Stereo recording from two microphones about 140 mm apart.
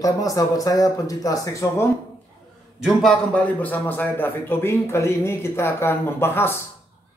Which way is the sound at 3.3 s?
10° left (ahead or behind).